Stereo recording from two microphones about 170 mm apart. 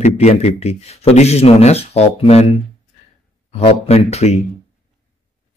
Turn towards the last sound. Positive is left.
turn(degrees=40)  # may be behind; listen again after turning